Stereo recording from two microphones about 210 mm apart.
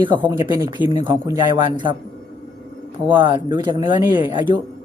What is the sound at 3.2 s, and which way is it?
Speech, 25° right (ahead or behind).